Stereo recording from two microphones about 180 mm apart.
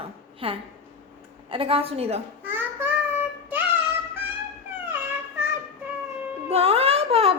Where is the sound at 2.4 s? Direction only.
10° right (ahead or behind).